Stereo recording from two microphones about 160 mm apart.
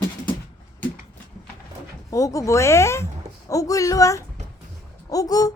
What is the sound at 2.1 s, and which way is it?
Speech, 20° left (ahead or behind).